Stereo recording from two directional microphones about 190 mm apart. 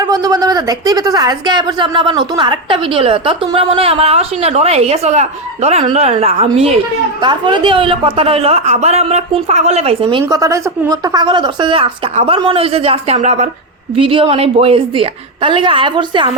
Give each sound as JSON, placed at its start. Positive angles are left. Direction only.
{"t": 0.0, "sound": "speech", "side_deg": -20}